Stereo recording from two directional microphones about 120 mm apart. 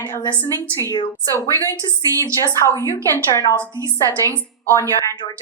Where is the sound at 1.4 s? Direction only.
30° right (ahead or behind).